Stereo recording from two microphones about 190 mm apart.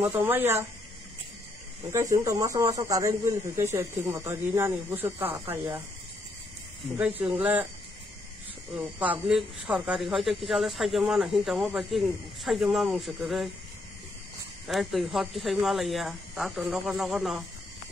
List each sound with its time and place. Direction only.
0.0 s speech: 10° right (ahead or behind)
1.9 s speech: 15° right (ahead or behind)
6.8 s speech: 10° right (ahead or behind)
8.7 s speech: 10° right (ahead or behind)
14.7 s speech: centre (ahead or behind)